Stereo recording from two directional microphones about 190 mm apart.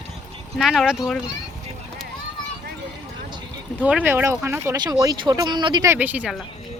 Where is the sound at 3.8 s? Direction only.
10° right (ahead or behind).